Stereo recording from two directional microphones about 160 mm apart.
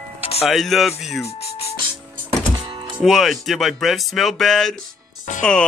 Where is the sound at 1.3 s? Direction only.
40° left (ahead or behind).